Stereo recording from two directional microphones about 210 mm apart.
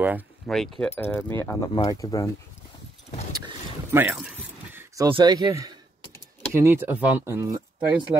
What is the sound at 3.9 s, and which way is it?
Keys jangling, 10° right (ahead or behind).